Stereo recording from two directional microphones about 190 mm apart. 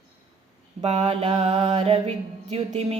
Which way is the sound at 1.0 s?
35° right (ahead or behind).